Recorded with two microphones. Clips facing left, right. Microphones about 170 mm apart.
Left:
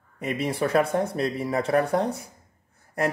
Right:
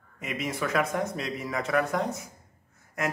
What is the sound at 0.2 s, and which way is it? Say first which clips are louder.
A woman's voice: left 5 dB; 35° left (ahead or behind).